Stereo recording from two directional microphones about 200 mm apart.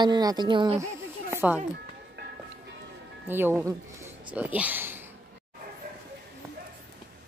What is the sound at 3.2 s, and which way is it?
Speech, 10° right (ahead or behind).